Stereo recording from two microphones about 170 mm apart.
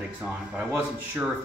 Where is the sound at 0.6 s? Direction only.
10° right (ahead or behind).